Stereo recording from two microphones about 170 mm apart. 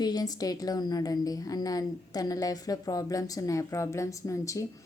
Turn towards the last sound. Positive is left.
turn(degrees=20)  # may be behind; listen again after turning